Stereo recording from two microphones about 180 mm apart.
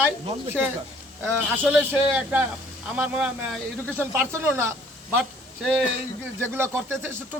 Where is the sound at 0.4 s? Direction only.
10° right (ahead or behind).